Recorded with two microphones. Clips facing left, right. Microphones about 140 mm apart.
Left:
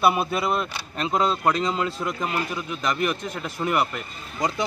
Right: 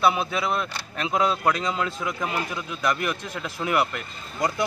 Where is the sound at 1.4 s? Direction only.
30° left (ahead or behind).